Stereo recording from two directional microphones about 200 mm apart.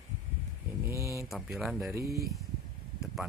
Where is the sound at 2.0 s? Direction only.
50° right (ahead or behind).